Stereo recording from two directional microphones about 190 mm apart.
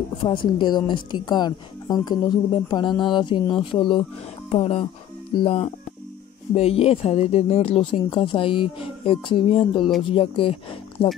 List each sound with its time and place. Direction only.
0.2 s speech: 25° left (ahead or behind)